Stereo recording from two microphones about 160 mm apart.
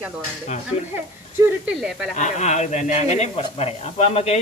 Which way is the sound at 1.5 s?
5° right (ahead or behind).